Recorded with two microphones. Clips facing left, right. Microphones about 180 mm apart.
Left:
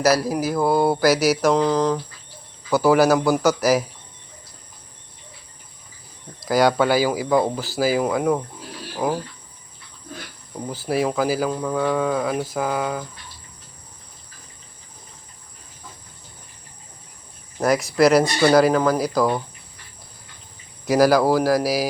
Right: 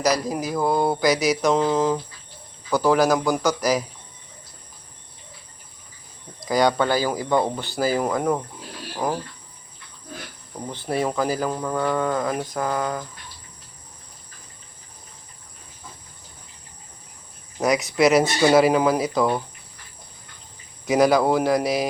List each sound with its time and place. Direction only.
0.0 s speech: 5° left (ahead or behind)
2.6 s a man's voice: 5° left (ahead or behind)
6.4 s speech: 5° left (ahead or behind)
10.7 s speech: 5° left (ahead or behind)
17.6 s speech: centre (ahead or behind)
20.8 s speech: centre (ahead or behind)